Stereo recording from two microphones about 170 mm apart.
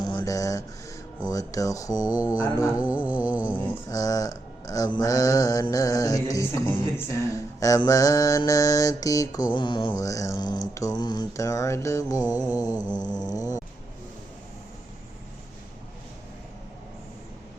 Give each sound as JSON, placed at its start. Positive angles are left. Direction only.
{"t": 0.0, "sound": "a sound", "side_deg": 25}
{"t": 1.3, "sound": "speech", "side_deg": 20}
{"t": 2.0, "sound": "music", "side_deg": -10}
{"t": 3.6, "sound": "speech", "side_deg": 15}